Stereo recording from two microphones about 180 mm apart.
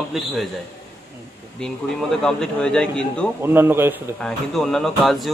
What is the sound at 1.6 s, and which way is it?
Speech, 5° left (ahead or behind).